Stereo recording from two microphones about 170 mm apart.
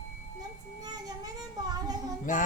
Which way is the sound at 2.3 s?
50° left (ahead or behind).